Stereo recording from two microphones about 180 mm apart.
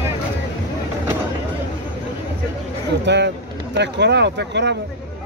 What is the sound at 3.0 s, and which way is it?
Speech, 70° right (ahead or behind).